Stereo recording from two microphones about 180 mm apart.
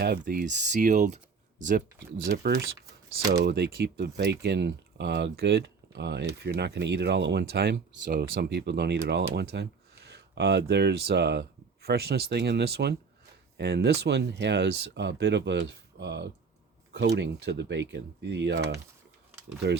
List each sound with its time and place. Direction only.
0.0 s speech: 60° right (ahead or behind)
2.2 s speech: 60° right (ahead or behind)
3.2 s speech: 20° right (ahead or behind)
3.4 s speech: 65° right (ahead or behind)